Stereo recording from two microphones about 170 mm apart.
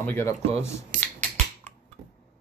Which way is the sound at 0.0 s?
15° left (ahead or behind).